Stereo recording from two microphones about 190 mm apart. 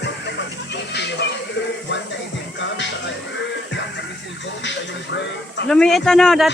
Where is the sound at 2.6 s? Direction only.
70° left (ahead or behind).